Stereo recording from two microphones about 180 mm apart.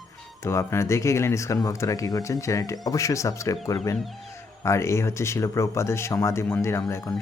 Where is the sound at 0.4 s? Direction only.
15° left (ahead or behind).